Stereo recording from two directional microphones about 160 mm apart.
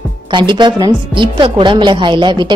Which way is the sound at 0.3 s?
30° right (ahead or behind).